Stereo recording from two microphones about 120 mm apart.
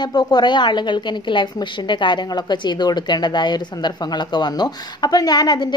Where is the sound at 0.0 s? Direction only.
35° left (ahead or behind).